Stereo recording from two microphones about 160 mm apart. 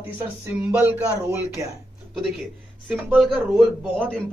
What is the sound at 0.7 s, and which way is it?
Speech, 10° right (ahead or behind).